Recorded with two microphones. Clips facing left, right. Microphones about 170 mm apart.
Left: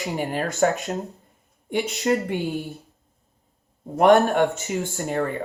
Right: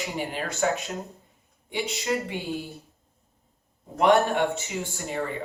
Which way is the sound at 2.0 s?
45° left (ahead or behind).